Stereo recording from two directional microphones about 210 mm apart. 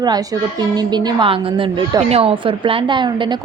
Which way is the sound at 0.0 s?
20° right (ahead or behind).